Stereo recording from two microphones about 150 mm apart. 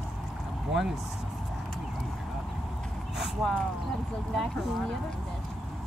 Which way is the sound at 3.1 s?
Centre (ahead or behind).